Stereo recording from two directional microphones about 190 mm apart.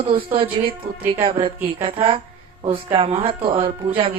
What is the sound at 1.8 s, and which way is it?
A woman's voice, 30° right (ahead or behind).